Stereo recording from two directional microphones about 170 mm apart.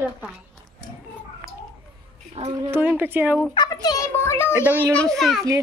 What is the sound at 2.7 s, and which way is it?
Speech, 10° right (ahead or behind).